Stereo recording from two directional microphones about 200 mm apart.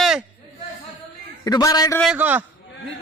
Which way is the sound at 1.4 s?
20° left (ahead or behind).